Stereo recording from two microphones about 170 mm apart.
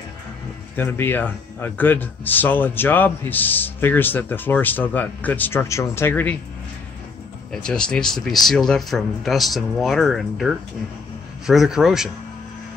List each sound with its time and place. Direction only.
0.7 s a man's voice: 15° left (ahead or behind)
7.5 s speech: 5° left (ahead or behind)